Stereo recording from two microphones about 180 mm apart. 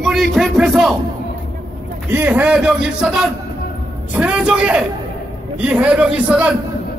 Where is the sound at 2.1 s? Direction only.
10° right (ahead or behind).